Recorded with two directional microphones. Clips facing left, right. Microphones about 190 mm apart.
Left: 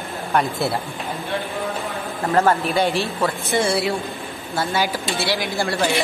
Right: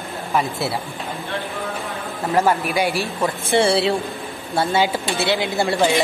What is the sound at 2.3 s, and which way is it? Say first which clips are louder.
Speech: left 1 dB; 10° right (ahead or behind).